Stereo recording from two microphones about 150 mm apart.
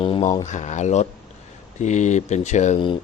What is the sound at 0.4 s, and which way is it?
Speech, 50° left (ahead or behind).